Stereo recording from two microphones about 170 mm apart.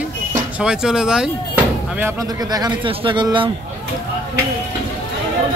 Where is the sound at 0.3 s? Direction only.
5° right (ahead or behind); by 3.4 s 30° right (ahead or behind).